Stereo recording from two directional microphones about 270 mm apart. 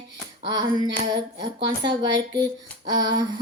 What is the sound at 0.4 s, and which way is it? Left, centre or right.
Speech, centre.